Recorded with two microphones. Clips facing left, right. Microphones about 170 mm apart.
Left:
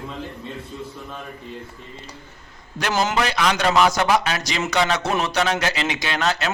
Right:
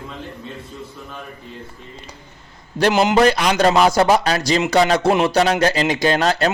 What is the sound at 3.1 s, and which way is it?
Music, 35° right (ahead or behind).